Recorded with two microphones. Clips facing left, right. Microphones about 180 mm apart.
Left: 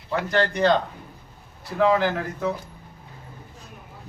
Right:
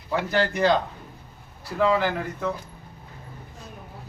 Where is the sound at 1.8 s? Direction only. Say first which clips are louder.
Left 2 dB; centre (ahead or behind).